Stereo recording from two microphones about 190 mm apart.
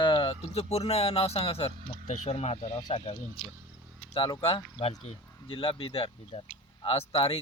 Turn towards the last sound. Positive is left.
turn(degrees=30)  # may be behind; listen again after turning